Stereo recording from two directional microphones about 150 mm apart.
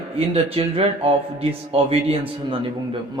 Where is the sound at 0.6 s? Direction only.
40° right (ahead or behind).